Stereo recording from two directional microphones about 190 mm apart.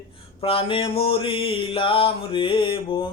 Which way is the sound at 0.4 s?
30° left (ahead or behind).